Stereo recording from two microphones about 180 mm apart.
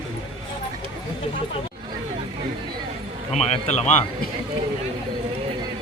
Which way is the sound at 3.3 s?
35° left (ahead or behind).